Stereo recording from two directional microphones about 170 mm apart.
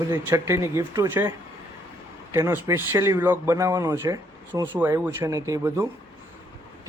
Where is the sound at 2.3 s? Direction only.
15° right (ahead or behind).